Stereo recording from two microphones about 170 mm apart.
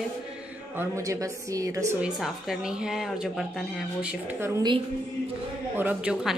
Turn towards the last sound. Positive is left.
turn(degrees=-5)  # may be behind; listen again after turning